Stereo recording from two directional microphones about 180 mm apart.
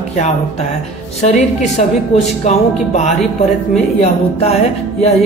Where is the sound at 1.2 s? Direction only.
40° left (ahead or behind).